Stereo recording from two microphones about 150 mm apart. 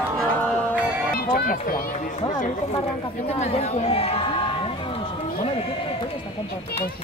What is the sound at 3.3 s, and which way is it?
Speech, 45° left (ahead or behind).